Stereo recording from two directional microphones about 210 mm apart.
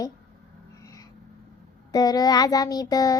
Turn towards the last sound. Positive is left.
turn(degrees=15)  # may be behind; listen again after turning